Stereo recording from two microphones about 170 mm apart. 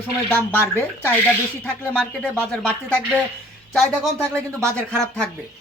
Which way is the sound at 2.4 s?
10° left (ahead or behind).